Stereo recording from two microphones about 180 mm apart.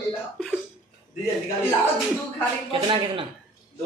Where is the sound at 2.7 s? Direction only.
30° right (ahead or behind).